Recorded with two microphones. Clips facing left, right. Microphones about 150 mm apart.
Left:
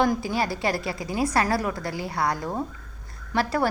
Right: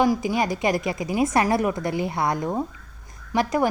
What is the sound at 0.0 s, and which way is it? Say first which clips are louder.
A woman's voice: right 2 dB; 10° right (ahead or behind).